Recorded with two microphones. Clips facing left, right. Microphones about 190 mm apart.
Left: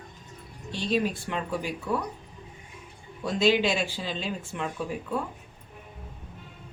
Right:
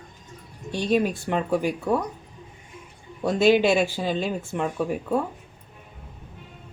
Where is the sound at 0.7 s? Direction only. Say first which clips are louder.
Right 5 dB; 50° right (ahead or behind).